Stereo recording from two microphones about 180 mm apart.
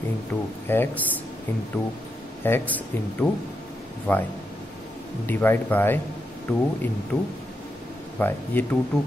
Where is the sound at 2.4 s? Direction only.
10° left (ahead or behind).